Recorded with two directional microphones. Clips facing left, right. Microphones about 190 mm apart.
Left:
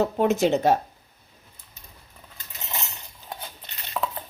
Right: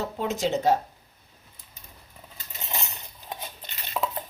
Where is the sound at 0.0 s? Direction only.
60° left (ahead or behind).